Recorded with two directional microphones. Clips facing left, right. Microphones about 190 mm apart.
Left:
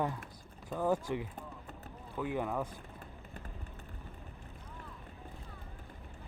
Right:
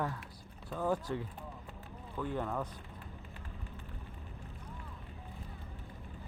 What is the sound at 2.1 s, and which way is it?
Speech, 10° left (ahead or behind).